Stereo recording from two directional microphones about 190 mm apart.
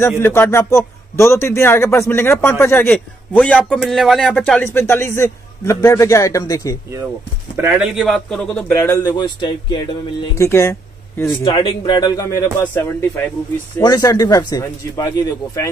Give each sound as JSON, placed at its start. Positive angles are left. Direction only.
{"t": 0.2, "sound": "a man's voice", "side_deg": 15}
{"t": 7.5, "sound": "speech", "side_deg": -10}
{"t": 8.7, "sound": "a man's voice", "side_deg": 15}
{"t": 11.4, "sound": "a man's voice", "side_deg": 25}